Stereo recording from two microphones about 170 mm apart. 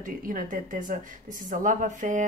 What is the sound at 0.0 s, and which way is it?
A woman's voice, 55° right (ahead or behind).